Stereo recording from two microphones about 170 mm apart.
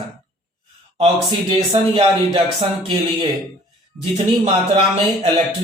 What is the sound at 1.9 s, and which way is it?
Speech, 30° right (ahead or behind).